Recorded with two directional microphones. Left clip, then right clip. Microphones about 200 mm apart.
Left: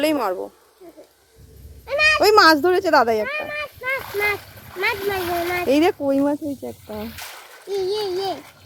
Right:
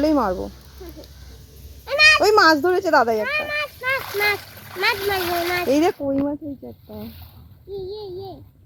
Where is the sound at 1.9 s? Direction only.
15° right (ahead or behind).